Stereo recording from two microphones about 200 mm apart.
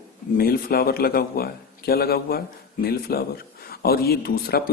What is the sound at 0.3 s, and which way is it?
Speech, 50° left (ahead or behind).